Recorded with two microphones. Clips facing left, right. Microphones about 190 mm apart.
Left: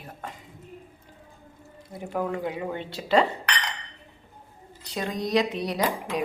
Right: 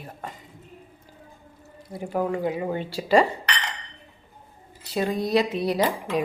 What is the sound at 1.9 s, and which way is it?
Speech, 5° right (ahead or behind).